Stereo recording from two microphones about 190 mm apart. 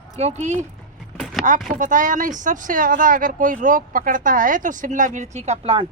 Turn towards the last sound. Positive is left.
turn(degrees=-30)  # may be behind; listen again after turning